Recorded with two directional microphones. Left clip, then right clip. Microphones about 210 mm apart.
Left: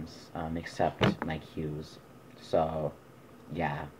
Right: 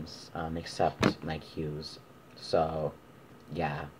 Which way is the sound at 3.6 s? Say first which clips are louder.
Even; 10° right (ahead or behind).